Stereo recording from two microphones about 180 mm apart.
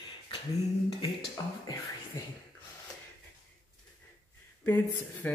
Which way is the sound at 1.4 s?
20° left (ahead or behind).